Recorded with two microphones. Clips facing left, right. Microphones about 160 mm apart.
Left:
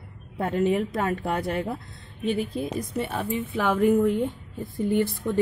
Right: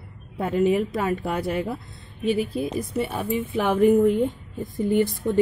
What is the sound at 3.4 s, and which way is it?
Speech, 20° right (ahead or behind).